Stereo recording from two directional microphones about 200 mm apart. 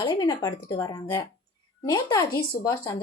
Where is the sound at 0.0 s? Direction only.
20° left (ahead or behind).